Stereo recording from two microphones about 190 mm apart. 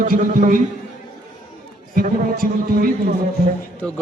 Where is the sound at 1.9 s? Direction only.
50° right (ahead or behind).